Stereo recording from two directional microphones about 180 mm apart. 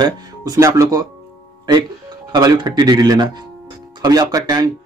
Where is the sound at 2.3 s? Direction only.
25° right (ahead or behind).